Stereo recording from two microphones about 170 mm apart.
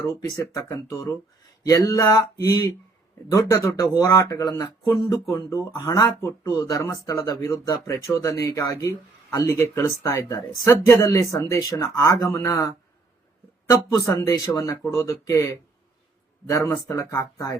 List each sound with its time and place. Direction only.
0.2 s speech: 20° left (ahead or behind)